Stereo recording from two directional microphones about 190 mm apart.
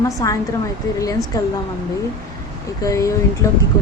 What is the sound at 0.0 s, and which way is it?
Speech, 15° left (ahead or behind).